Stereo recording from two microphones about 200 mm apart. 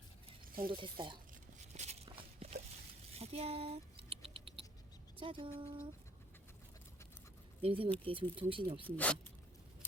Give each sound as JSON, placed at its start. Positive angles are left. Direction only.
{"t": 0.4, "sound": "a sound", "side_deg": -45}
{"t": 0.7, "sound": "speech", "side_deg": -25}
{"t": 1.5, "sound": "a sound", "side_deg": -35}
{"t": 3.2, "sound": "patter", "side_deg": -30}
{"t": 5.1, "sound": "speech", "side_deg": -25}
{"t": 7.6, "sound": "speech", "side_deg": -25}
{"t": 9.0, "sound": "speech", "side_deg": 10}